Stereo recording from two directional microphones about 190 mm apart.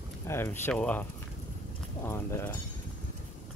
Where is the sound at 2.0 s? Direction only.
15° left (ahead or behind).